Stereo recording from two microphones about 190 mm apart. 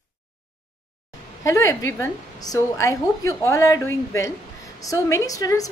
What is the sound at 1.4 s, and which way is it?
A woman's voice, 15° left (ahead or behind).